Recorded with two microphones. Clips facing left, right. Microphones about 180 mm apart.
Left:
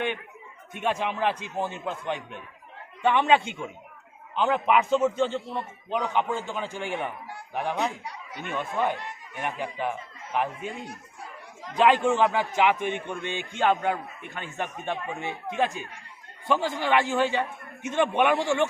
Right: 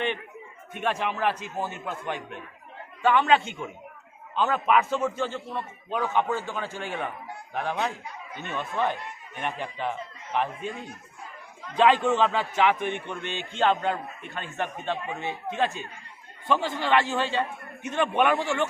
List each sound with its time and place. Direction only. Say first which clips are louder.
0.8 s a man's voice: left 1 dB; 15° left (ahead or behind)
8.0 s snicker: even; 80° left
8.4 s a man's voice: left 1 dB; 15° left (ahead or behind)
11.8 s a man's voice: even; 10° left (ahead or behind)